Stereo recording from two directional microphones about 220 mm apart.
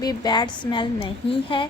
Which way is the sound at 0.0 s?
15° left (ahead or behind).